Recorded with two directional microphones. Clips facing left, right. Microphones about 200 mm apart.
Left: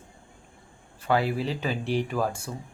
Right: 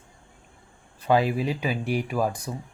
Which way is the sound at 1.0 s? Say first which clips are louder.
Right 3 dB; 15° right (ahead or behind).